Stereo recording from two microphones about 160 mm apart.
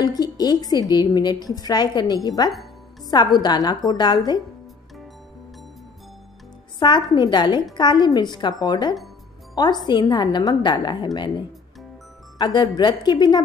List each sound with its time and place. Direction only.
0.0 s a woman's voice: 25° left (ahead or behind)
6.8 s a woman's voice: 30° left (ahead or behind)
12.4 s a woman's voice: 25° left (ahead or behind)